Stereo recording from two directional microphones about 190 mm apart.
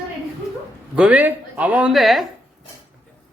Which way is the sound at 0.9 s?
5° right (ahead or behind).